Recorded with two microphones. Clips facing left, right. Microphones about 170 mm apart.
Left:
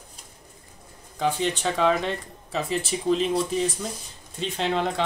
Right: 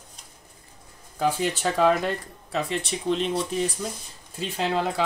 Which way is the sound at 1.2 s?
5° right (ahead or behind).